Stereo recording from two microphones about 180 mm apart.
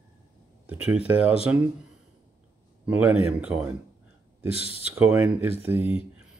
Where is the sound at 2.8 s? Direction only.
10° right (ahead or behind).